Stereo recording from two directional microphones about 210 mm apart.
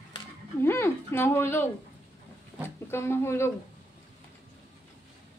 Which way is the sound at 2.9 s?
10° left (ahead or behind).